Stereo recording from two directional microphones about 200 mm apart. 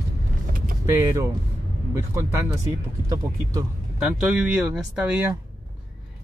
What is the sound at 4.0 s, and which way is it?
Speech, centre (ahead or behind).